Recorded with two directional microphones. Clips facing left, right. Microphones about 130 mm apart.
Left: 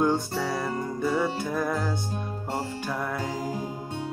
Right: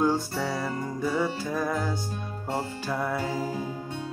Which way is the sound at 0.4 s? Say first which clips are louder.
Left 1 dB; centre (ahead or behind).